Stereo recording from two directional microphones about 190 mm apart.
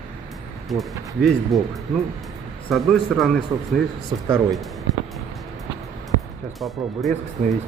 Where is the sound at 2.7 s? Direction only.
Centre (ahead or behind).